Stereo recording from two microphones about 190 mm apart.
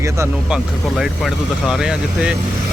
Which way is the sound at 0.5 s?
Centre (ahead or behind).